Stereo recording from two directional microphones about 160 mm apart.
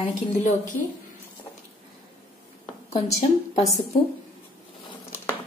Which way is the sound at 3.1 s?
20° left (ahead or behind).